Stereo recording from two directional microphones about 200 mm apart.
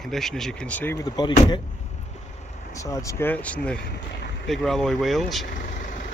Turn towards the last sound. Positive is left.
turn(degrees=0)  # may be behind; listen again after turning